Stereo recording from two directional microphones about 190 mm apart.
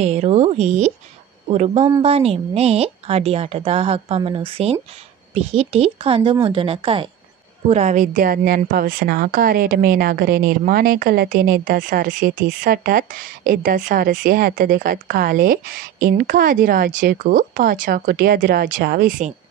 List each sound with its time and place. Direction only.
0.0 s a woman's voice: 35° right (ahead or behind)